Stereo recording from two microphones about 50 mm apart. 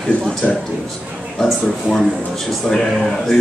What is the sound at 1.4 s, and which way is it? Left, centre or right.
A man's voice, centre.